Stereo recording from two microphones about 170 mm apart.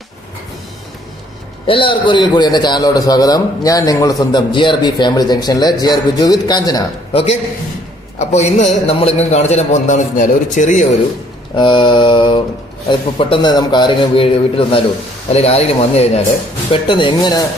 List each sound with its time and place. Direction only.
1.6 s a man's voice: 30° left (ahead or behind)
7.1 s a man's voice: 35° left (ahead or behind)
11.5 s a man's voice: 30° left (ahead or behind)